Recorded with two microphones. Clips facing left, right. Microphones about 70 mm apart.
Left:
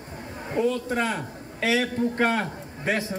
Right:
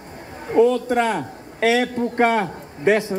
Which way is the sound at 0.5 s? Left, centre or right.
Right.